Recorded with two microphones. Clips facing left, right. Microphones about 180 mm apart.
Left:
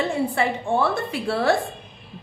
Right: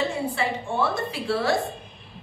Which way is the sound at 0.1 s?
55° left (ahead or behind).